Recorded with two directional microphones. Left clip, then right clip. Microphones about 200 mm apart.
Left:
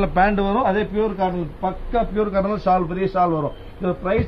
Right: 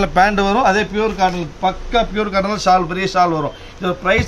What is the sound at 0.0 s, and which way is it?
Speech, 25° right (ahead or behind).